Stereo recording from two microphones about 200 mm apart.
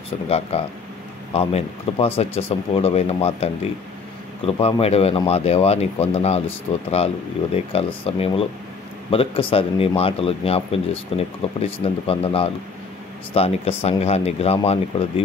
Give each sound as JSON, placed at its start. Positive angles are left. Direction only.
{"t": 0.3, "sound": "speech", "side_deg": 30}
{"t": 4.5, "sound": "speech", "side_deg": 30}